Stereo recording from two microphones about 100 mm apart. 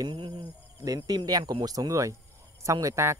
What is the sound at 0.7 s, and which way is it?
Speech, 40° right (ahead or behind).